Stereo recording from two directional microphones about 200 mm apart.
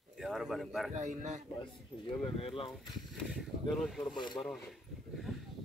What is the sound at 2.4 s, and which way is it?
Speech, 30° left (ahead or behind).